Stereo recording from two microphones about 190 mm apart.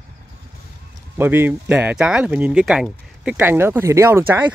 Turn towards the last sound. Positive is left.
turn(degrees=-10)  # may be behind; listen again after turning